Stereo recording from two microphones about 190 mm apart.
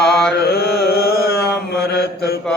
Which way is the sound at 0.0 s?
5° left (ahead or behind).